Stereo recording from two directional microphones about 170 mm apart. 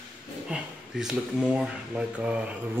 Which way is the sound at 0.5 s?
5° right (ahead or behind).